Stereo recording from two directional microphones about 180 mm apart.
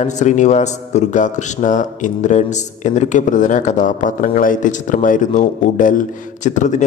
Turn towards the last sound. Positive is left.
turn(degrees=45)  # may be behind; listen again after turning